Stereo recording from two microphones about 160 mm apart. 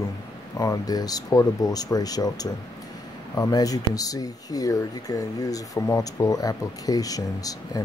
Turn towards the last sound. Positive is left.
turn(degrees=20)  # may be behind; listen again after turning